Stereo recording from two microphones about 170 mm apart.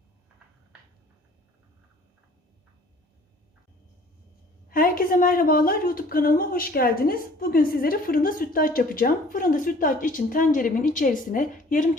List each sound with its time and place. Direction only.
4.7 s a woman's voice: 55° left (ahead or behind)